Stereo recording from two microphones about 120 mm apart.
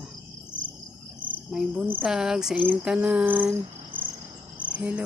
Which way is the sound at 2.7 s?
10° right (ahead or behind).